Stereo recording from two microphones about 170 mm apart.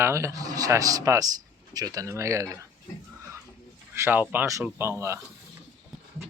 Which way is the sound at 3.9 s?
15° right (ahead or behind).